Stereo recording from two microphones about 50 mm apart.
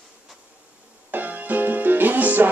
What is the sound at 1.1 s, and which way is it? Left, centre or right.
Music, right.